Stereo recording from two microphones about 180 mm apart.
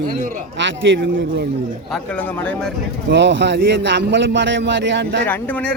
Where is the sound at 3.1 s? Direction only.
85° right.